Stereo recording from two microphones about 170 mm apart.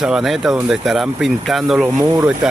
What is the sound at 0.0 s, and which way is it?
Speech, centre (ahead or behind).